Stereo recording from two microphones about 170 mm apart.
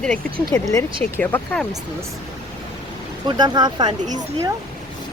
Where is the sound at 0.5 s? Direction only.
15° left (ahead or behind).